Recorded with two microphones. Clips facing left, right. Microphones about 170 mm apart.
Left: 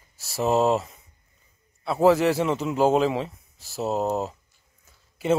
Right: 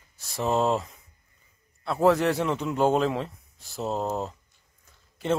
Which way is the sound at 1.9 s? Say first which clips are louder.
Left 3 dB; 5° left (ahead or behind).